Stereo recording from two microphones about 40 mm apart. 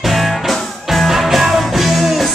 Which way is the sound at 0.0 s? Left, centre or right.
Centre.